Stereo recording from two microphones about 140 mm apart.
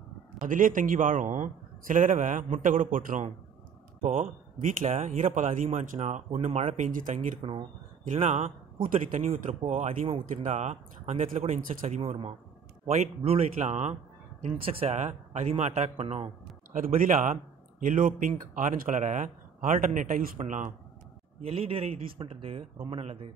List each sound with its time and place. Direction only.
0.4 s a man's voice: 75° right (ahead or behind); by 6.9 s 50° right (ahead or behind)
6.9 s a man's voice: 70° right (ahead or behind); by 8.5 s 50° right (ahead or behind)
8.7 s a man's voice: 75° right (ahead or behind)
9.3 s speech: 45° right (ahead or behind)
9.7 s speech: 60° right (ahead or behind)
11.2 s speech: 65° right (ahead or behind)
14.5 s speech: 40° right (ahead or behind)
16.7 s a man's voice: 85° right; by 20.7 s 65° right (ahead or behind)
21.4 s speech: 45° right (ahead or behind)